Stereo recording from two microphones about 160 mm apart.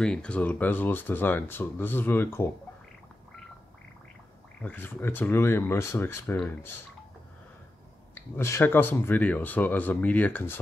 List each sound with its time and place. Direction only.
0.0 s speech: 5° left (ahead or behind)
4.6 s speech: 10° left (ahead or behind)
8.1 s speech: 15° left (ahead or behind)